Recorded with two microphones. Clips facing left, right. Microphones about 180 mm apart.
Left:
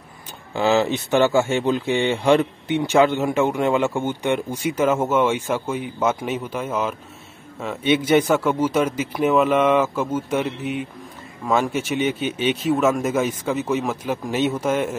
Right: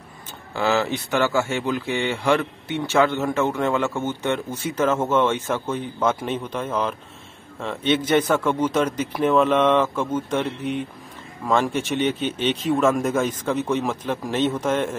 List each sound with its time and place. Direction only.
0.5 s speech: 20° left (ahead or behind)